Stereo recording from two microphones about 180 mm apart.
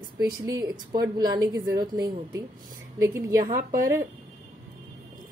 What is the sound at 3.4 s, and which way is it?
Speech, 50° right (ahead or behind).